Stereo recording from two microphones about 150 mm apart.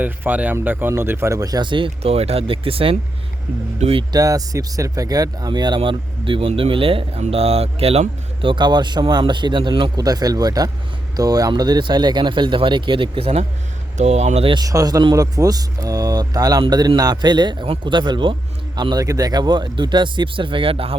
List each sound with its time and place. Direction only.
0.0 s speech: 10° right (ahead or behind); by 4.0 s 45° right (ahead or behind)
4.1 s speech: 25° right (ahead or behind); by 14.5 s 45° right (ahead or behind)
14.5 s speech: 25° right (ahead or behind)